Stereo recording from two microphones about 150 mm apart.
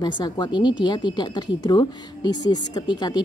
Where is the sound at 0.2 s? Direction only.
30° left (ahead or behind).